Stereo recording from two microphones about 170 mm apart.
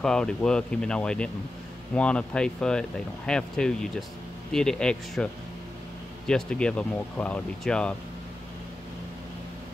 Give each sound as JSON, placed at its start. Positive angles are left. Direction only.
{"t": 0.0, "sound": "speech", "side_deg": 5}